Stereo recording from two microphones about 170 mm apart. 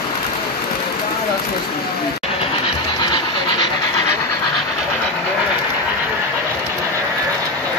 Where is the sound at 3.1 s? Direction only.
30° left (ahead or behind).